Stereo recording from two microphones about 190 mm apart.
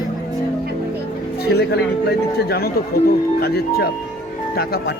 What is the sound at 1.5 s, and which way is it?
Speech, 60° left (ahead or behind).